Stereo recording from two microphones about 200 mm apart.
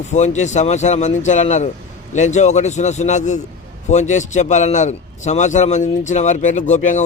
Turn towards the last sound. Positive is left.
turn(degrees=40)  # may be behind; listen again after turning